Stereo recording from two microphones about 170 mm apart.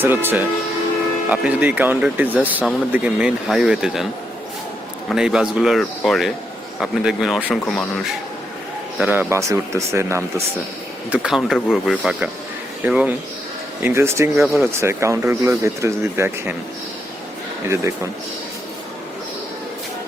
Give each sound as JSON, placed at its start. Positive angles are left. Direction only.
{"t": 0.0, "sound": "speech", "side_deg": -10}
{"t": 5.0, "sound": "a man's voice", "side_deg": -5}
{"t": 9.0, "sound": "speech", "side_deg": -10}
{"t": 11.1, "sound": "a man's voice", "side_deg": -5}
{"t": 17.7, "sound": "speech", "side_deg": -15}